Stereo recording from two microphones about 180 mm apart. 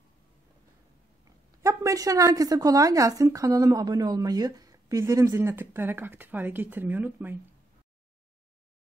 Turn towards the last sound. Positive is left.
turn(degrees=-10)  # may be behind; listen again after turning